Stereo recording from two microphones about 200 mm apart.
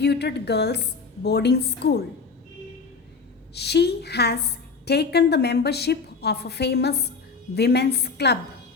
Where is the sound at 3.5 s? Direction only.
55° left (ahead or behind).